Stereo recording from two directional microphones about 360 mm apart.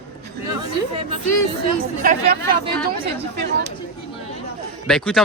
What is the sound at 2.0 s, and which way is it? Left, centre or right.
Speech, right.